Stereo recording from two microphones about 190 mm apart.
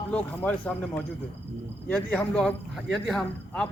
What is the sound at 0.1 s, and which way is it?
A man's voice, 5° left (ahead or behind).